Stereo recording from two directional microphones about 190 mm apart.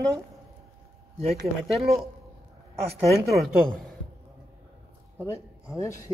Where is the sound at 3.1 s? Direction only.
Centre (ahead or behind).